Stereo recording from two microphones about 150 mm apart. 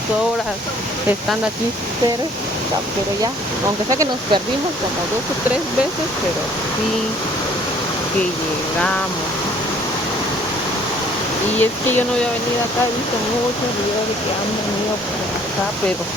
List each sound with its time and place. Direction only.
3.9 s speech: 25° right (ahead or behind)
11.6 s speech: 15° left (ahead or behind)